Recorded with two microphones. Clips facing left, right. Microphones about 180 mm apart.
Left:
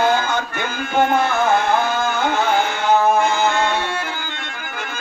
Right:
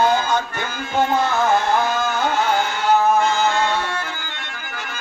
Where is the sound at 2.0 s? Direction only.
55° left (ahead or behind).